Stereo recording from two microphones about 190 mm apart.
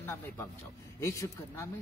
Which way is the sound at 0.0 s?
15° left (ahead or behind).